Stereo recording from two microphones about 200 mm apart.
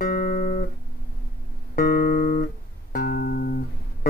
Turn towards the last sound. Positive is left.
turn(degrees=50)  # may be behind; listen again after turning